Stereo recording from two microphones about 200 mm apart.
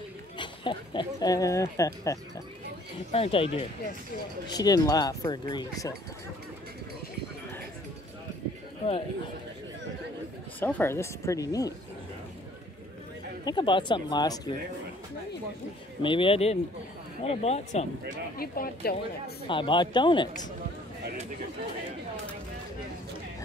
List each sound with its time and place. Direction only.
0.4 s speech: 25° left (ahead or behind)
3.1 s speech: 30° left (ahead or behind)
10.6 s speech: 10° left (ahead or behind)
13.5 s speech: 25° left (ahead or behind)
16.0 s speech: 25° left (ahead or behind)
18.4 s speech: 45° left (ahead or behind)
19.4 s speech: 25° left (ahead or behind)